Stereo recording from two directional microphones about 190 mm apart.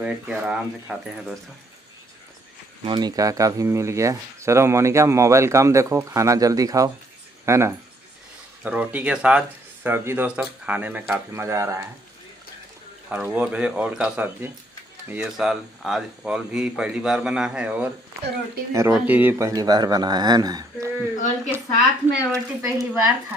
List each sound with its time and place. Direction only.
0.0 s speech: 5° right (ahead or behind)
2.8 s speech: 20° right (ahead or behind)
13.1 s speech: 5° right (ahead or behind)
22.3 s speech: 15° right (ahead or behind)